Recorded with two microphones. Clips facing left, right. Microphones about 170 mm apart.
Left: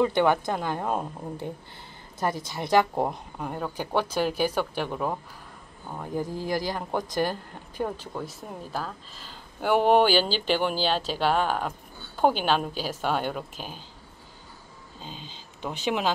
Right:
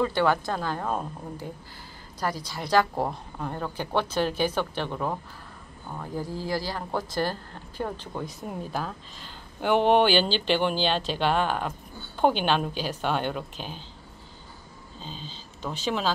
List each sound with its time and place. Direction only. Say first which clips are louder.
0.0 s a woman's voice: left 2 dB; 20° left (ahead or behind)
15.0 s speech: right 1 dB; 15° left (ahead or behind)